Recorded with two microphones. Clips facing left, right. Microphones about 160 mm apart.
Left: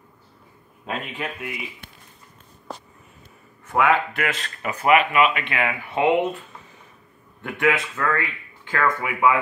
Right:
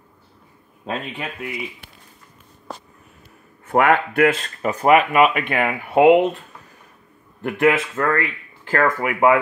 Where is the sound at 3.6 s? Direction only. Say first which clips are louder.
Right 3 dB; 55° right (ahead or behind).